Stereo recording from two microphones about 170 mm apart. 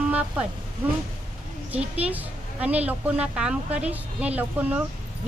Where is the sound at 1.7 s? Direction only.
10° right (ahead or behind).